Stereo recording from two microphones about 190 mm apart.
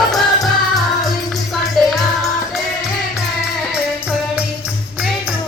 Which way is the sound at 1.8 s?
Centre (ahead or behind).